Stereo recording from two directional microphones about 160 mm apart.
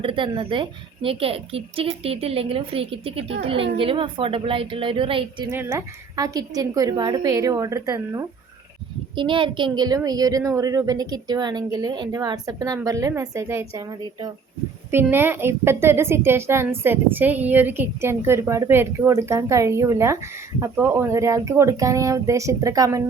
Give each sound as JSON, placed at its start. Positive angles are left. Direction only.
{"t": 0.0, "sound": "a woman's voice", "side_deg": -30}
{"t": 5.6, "sound": "a woman's voice", "side_deg": -20}
{"t": 9.1, "sound": "a woman's voice", "side_deg": -30}